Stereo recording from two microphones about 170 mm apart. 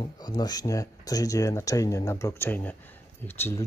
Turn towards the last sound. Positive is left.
turn(degrees=15)  # may be behind; listen again after turning